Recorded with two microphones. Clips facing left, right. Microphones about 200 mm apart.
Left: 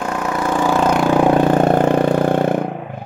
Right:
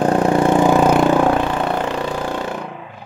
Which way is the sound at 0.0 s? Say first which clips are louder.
Right 6 dB; 35° right (ahead or behind).